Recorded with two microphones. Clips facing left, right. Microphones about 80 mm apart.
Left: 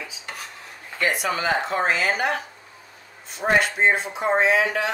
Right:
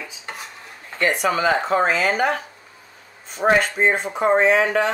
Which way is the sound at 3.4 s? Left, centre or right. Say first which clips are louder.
Right 2 dB; right.